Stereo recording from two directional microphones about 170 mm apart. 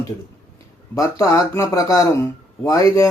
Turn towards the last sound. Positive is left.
turn(degrees=20)  # may be behind; listen again after turning